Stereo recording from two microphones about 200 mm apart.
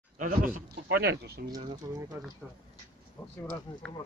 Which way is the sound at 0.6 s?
55° right (ahead or behind).